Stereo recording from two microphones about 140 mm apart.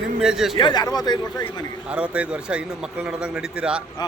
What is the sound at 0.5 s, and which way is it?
Speech, 30° left (ahead or behind).